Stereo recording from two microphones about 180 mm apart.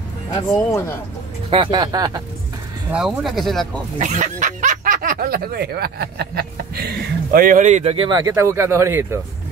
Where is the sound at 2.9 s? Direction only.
5° right (ahead or behind).